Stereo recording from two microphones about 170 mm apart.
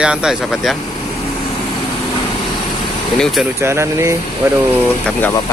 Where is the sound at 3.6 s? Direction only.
15° right (ahead or behind).